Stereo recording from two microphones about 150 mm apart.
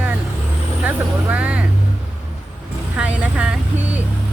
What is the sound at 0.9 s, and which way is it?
Speech, 10° right (ahead or behind).